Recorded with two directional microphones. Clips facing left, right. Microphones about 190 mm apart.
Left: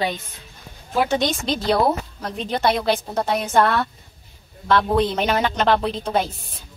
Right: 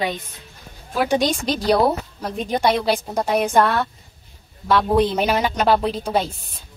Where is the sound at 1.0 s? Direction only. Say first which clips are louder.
Right 5 dB; 15° right (ahead or behind).